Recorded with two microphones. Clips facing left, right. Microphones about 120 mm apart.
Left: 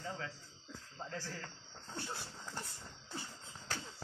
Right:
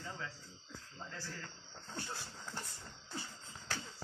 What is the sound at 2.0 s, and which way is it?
Speech, 5° left (ahead or behind).